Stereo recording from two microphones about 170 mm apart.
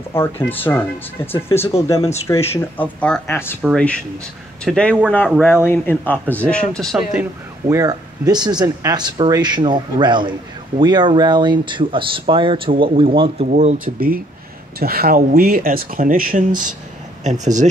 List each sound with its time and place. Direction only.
0.1 s speech: 15° left (ahead or behind); by 7.2 s 5° right (ahead or behind)
7.6 s speech: 20° right (ahead or behind)
13.5 s speech: 45° right (ahead or behind)
13.9 s speech: 60° right (ahead or behind); by 17.6 s 45° right (ahead or behind)